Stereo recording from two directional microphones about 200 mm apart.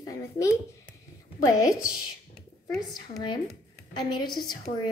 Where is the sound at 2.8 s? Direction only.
20° left (ahead or behind).